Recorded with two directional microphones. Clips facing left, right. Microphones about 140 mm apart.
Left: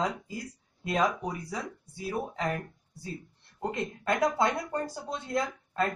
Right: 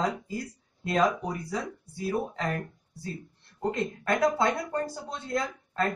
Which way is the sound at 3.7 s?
15° left (ahead or behind).